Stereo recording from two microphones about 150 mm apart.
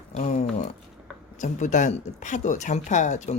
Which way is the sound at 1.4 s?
55° left (ahead or behind).